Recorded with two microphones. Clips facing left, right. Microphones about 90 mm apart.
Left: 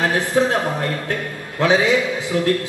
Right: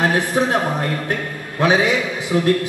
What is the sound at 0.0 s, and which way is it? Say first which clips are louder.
A man's voice: even; 20° right (ahead or behind).